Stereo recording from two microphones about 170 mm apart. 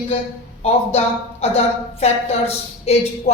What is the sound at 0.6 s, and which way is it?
A woman's voice, 35° left (ahead or behind).